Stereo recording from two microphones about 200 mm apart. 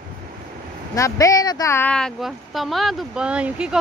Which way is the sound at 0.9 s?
15° left (ahead or behind).